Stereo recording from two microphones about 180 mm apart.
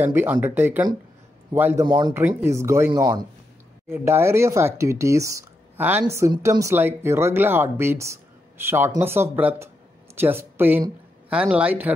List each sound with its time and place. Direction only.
0.0 s speech: 10° right (ahead or behind)
1.9 s a woman's voice: 25° right (ahead or behind)